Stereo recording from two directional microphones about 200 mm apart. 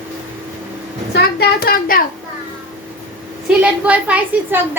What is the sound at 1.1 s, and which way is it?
Speech, 50° left (ahead or behind).